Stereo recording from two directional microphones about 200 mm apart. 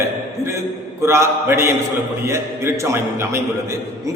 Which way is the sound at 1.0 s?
15° right (ahead or behind).